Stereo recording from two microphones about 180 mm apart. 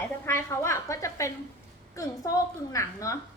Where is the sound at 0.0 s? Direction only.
15° left (ahead or behind).